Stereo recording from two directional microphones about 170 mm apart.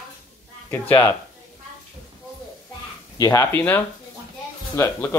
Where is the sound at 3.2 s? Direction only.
15° left (ahead or behind).